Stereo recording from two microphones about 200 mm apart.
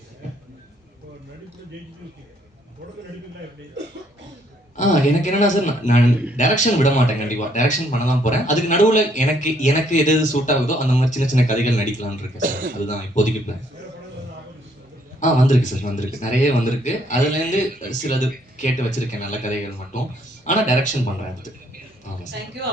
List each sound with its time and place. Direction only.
4.8 s speech: 35° left (ahead or behind)
12.4 s speech: 45° right (ahead or behind)
12.8 s speech: 35° left (ahead or behind)
15.2 s speech: 40° left (ahead or behind)